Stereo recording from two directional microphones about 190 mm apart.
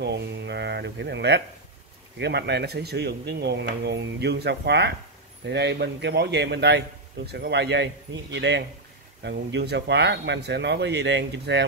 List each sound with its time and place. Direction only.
0.0 s speech: 65° right (ahead or behind)